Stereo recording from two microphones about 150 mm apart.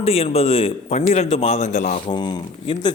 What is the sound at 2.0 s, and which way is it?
Speech, 30° left (ahead or behind).